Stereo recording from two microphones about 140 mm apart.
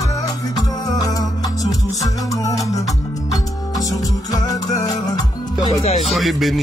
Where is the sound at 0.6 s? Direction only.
25° left (ahead or behind).